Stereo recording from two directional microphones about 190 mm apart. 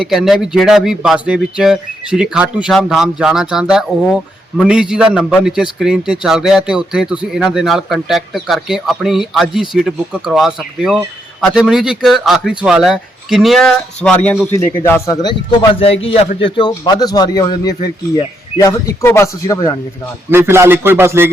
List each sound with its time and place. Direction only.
0.0 s speech: centre (ahead or behind); by 19.8 s 15° left (ahead or behind)
20.3 s speech: 10° right (ahead or behind)